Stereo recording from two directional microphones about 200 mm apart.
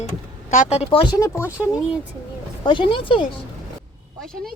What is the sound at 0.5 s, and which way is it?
Speech, 35° left (ahead or behind).